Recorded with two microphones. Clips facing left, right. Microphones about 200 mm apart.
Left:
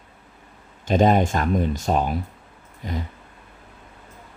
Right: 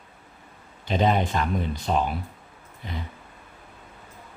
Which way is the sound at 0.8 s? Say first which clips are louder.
Left 5 dB; 45° left (ahead or behind).